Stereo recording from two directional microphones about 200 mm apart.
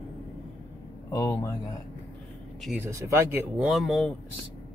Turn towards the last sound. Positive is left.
turn(degrees=0)  # may be behind; listen again after turning